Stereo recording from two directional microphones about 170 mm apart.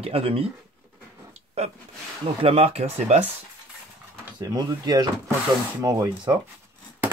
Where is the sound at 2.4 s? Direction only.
35° right (ahead or behind).